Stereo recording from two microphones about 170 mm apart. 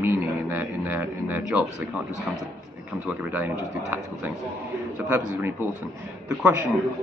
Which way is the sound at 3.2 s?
10° right (ahead or behind).